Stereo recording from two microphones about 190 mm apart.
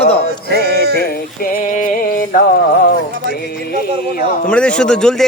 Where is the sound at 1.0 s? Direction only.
50° left (ahead or behind).